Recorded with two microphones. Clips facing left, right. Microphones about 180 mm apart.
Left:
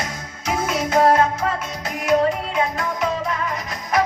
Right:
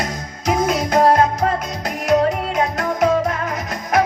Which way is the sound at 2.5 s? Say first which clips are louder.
Right 3 dB; 40° right (ahead or behind).